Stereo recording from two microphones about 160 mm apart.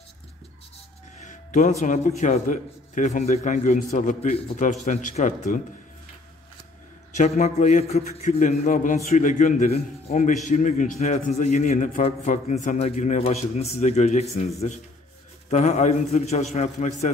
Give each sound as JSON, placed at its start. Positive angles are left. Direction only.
{"t": 1.2, "sound": "a man's voice", "side_deg": 50}
{"t": 7.2, "sound": "a man's voice", "side_deg": 45}